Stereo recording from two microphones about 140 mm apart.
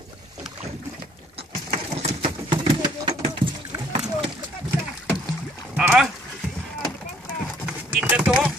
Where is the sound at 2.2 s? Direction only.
35° right (ahead or behind).